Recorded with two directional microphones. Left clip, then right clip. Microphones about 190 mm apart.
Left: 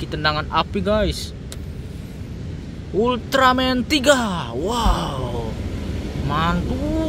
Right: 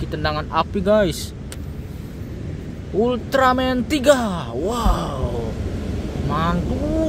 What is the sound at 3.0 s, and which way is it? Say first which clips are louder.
Speech: left 1 dB; centre (ahead or behind).